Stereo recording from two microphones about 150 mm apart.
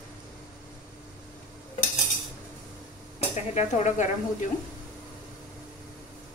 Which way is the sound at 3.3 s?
50° left (ahead or behind).